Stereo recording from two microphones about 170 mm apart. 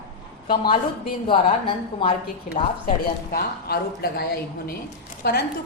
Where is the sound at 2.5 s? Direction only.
60° left (ahead or behind).